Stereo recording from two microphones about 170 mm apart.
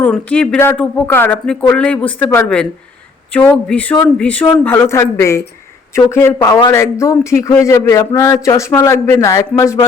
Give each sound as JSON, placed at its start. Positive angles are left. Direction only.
{"t": 0.0, "sound": "speech", "side_deg": 10}